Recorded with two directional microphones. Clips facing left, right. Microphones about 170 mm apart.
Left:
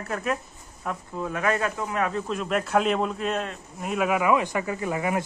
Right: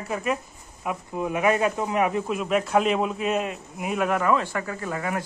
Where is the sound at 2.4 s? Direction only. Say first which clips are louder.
Right 1 dB; centre (ahead or behind); by 5.2 s 15° left (ahead or behind).